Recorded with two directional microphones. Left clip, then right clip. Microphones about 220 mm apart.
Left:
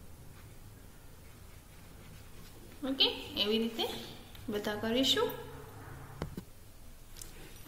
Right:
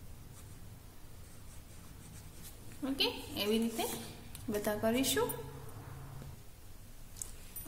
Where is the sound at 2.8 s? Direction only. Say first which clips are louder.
Left 4 dB; 30° right (ahead or behind).